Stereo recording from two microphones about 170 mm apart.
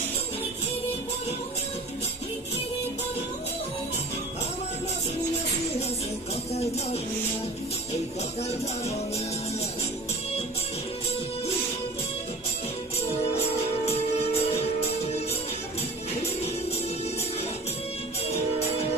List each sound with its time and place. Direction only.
6.5 s music: 35° left (ahead or behind)
8.4 s music: 40° left (ahead or behind)
13.9 s music: 35° left (ahead or behind)